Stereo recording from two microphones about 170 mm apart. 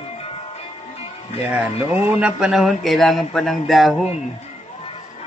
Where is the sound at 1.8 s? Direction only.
10° right (ahead or behind).